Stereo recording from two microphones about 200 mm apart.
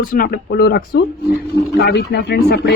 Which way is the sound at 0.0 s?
45° left (ahead or behind).